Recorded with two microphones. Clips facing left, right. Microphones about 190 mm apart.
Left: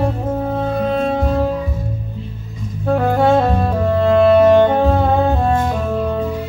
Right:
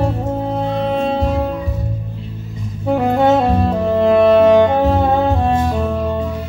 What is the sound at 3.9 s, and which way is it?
Music, 5° right (ahead or behind).